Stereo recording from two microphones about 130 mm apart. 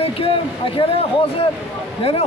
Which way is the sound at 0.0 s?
45° left (ahead or behind).